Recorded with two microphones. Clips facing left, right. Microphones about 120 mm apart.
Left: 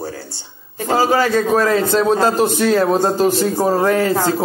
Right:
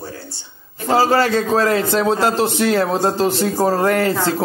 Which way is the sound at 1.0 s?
15° left (ahead or behind).